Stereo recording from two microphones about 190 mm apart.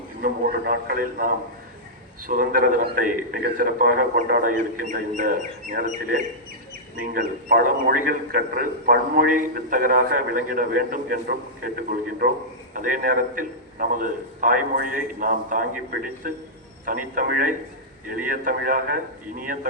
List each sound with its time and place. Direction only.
0.2 s a man's voice: 50° right (ahead or behind)